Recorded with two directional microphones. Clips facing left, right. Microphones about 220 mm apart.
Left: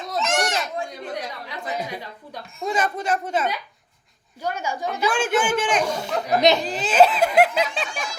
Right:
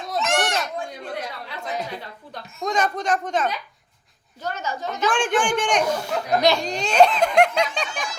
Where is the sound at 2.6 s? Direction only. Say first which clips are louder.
Right 1 dB; 5° left (ahead or behind).